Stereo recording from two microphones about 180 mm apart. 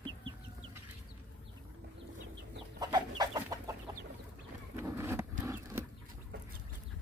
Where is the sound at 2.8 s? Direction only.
20° right (ahead or behind).